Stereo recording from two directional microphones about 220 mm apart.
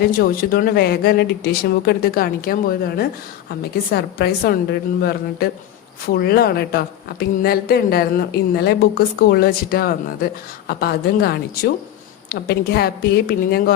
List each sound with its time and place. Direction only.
0.1 s a woman's voice: 45° left (ahead or behind)